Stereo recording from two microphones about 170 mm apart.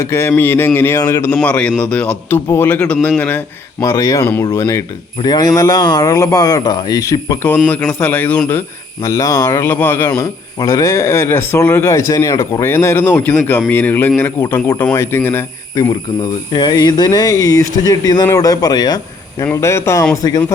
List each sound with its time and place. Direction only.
0.0 s speech: 15° left (ahead or behind)
7.7 s speech: 5° left (ahead or behind)